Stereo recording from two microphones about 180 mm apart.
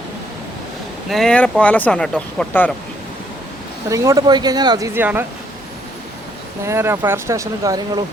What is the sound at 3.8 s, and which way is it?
Speech, 15° right (ahead or behind).